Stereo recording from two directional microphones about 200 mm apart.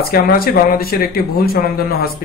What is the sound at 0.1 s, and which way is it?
Speech, 50° left (ahead or behind).